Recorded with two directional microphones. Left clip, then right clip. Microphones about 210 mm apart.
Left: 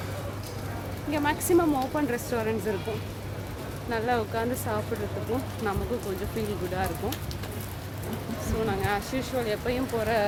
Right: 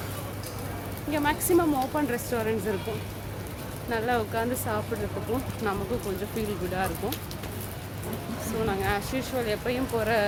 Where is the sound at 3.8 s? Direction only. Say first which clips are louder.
Even; centre (ahead or behind).